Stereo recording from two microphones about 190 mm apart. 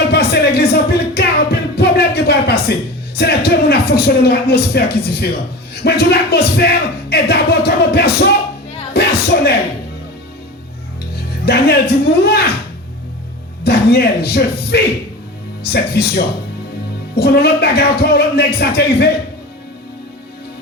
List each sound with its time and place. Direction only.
0.1 s music: 55° left (ahead or behind)
3.2 s speech: 60° left (ahead or behind)
8.9 s a sound: 55° left (ahead or behind)
11.1 s speech: 55° left (ahead or behind)
13.7 s speech: 55° left (ahead or behind)